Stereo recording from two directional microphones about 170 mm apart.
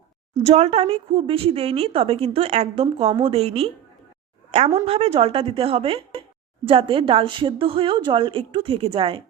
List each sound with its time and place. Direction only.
0.3 s a woman's voice: 40° right (ahead or behind)